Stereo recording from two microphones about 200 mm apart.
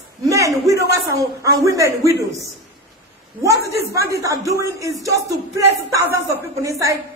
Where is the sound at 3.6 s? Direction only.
15° right (ahead or behind).